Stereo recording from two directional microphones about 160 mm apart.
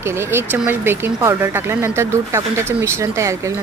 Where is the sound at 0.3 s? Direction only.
15° right (ahead or behind).